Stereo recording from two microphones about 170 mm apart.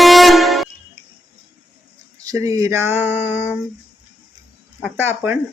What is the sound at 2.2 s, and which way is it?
Speech, 20° right (ahead or behind).